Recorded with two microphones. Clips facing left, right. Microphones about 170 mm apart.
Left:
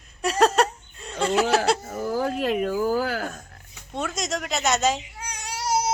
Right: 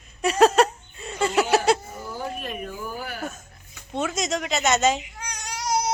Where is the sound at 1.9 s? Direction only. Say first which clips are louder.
Left 7 dB; 90° left.